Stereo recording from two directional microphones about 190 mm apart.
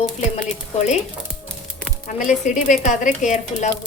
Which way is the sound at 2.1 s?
40° left (ahead or behind).